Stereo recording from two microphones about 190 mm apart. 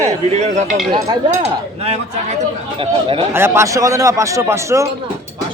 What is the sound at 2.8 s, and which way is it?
Speech, 30° right (ahead or behind).